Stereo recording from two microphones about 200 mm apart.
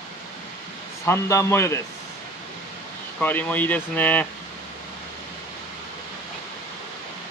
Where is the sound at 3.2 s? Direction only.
10° left (ahead or behind).